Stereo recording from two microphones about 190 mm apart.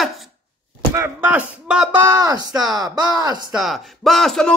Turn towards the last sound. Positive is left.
turn(degrees=0)  # may be behind; listen again after turning